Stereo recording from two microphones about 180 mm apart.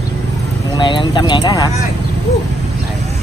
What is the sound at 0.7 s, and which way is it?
Speech, 25° left (ahead or behind).